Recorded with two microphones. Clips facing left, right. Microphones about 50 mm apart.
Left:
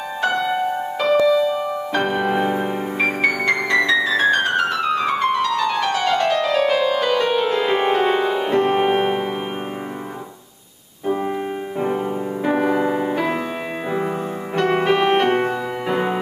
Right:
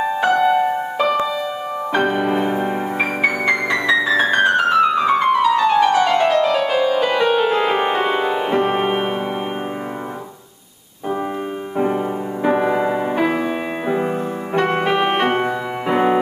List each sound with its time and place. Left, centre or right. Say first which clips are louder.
0.2 s music: right 4 dB; centre
12.4 s music: right 2 dB; centre
14.9 s music: left 1 dB; centre